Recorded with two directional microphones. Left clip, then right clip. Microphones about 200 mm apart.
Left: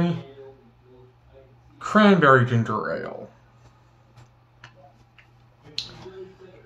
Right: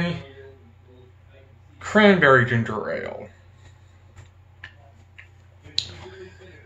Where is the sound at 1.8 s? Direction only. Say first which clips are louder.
Right 2 dB; 10° left (ahead or behind).